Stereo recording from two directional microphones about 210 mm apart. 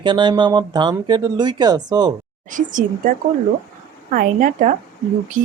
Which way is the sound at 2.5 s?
40° right (ahead or behind).